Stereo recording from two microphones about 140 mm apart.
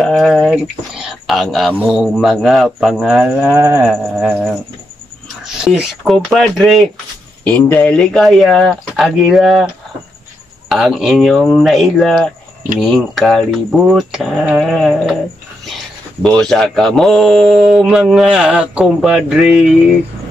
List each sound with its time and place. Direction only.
0.0 s a sound: 5° left (ahead or behind)
0.5 s speech: 5° right (ahead or behind)
3.5 s cattle: 20° right (ahead or behind)
3.8 s speech: 5° right (ahead or behind)
5.4 s speech: 5° right (ahead or behind)
7.4 s speech: 10° left (ahead or behind)
10.7 s speech: 5° right (ahead or behind)
16.2 s speech: 5° left (ahead or behind)